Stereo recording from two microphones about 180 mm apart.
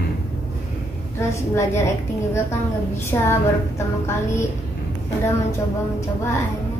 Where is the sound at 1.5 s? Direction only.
15° left (ahead or behind).